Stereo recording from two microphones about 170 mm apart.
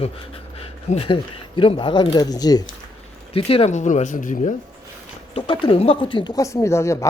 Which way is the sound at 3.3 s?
35° left (ahead or behind).